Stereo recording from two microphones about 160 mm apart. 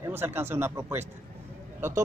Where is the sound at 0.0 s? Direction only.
15° right (ahead or behind).